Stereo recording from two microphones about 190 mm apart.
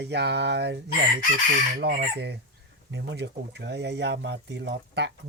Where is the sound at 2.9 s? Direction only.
65° right (ahead or behind).